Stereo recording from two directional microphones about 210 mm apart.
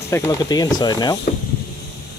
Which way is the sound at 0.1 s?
15° left (ahead or behind).